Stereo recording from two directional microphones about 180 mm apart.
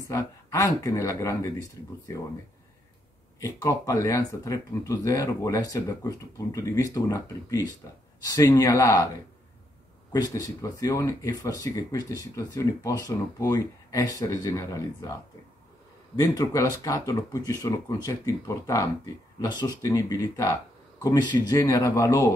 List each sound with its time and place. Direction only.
0.1 s speech: 15° left (ahead or behind)
3.3 s speech: 15° left (ahead or behind)
10.1 s speech: 20° left (ahead or behind)
16.2 s speech: 20° left (ahead or behind)